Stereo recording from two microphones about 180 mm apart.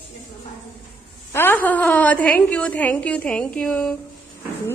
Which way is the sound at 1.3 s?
10° left (ahead or behind).